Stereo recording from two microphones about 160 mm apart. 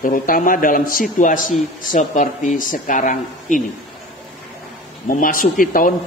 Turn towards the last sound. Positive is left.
turn(degrees=60)  # may be behind; listen again after turning